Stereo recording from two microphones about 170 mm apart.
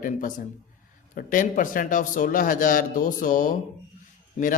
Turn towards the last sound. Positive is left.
turn(degrees=40)  # may be behind; listen again after turning